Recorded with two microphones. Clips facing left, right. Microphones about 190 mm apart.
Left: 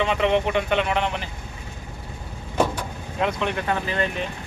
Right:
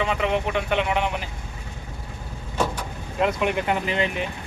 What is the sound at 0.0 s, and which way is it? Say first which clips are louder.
Speech: left 3 dB; 5° right (ahead or behind).